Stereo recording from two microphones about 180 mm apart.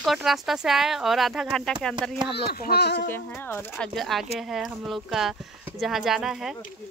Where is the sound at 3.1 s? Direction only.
10° left (ahead or behind).